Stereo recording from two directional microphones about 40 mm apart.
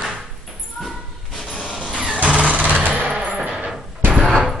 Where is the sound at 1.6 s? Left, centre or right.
Centre.